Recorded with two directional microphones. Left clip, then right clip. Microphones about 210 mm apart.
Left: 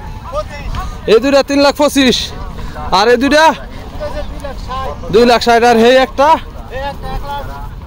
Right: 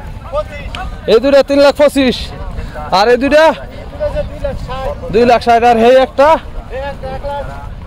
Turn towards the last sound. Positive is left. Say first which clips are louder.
# right 2 dB
turn(degrees=35)  # may be behind; listen again after turning